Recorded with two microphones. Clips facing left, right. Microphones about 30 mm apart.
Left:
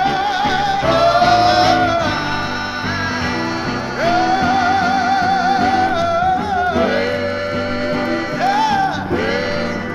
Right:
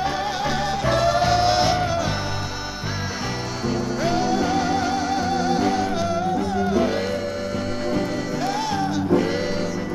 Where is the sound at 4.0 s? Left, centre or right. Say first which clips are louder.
Left 8 dB; left.